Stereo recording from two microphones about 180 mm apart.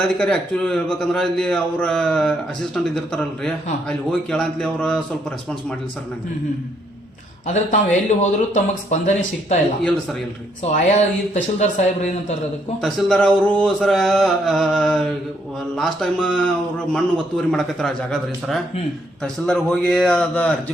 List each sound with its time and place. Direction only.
0.2 s a man's voice: 5° left (ahead or behind)
7.4 s speech: 40° left (ahead or behind)
9.8 s a man's voice: centre (ahead or behind)
10.6 s speech: 40° left (ahead or behind)
12.8 s a man's voice: 5° left (ahead or behind)